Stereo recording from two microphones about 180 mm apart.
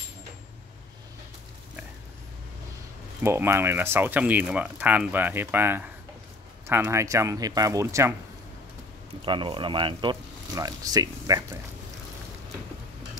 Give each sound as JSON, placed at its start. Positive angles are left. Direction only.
{"t": 3.3, "sound": "speech", "side_deg": -15}
{"t": 9.2, "sound": "speech", "side_deg": -25}